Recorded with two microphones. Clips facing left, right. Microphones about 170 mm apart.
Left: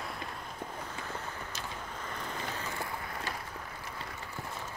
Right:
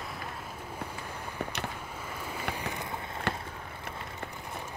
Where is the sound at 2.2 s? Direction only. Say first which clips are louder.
Right 4 dB; 10° right (ahead or behind).